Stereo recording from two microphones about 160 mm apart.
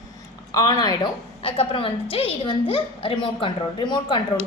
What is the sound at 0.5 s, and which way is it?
A woman's voice, 25° left (ahead or behind).